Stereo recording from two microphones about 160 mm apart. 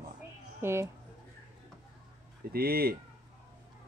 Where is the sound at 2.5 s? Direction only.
70° right (ahead or behind).